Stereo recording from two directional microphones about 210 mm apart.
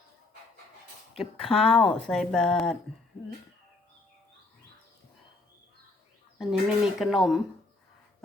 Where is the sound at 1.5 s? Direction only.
25° left (ahead or behind).